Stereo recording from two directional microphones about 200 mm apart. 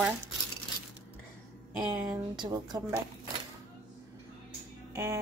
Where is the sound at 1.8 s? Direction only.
20° right (ahead or behind).